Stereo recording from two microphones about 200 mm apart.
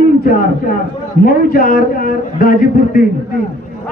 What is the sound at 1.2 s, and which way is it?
A man's voice, 45° left (ahead or behind).